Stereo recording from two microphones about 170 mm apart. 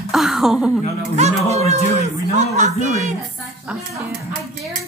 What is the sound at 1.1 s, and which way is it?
Speech, 40° right (ahead or behind).